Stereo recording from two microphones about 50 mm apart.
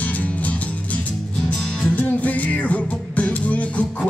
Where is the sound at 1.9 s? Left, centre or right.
Left.